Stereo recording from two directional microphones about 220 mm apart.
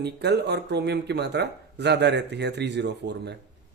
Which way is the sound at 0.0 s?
50° right (ahead or behind).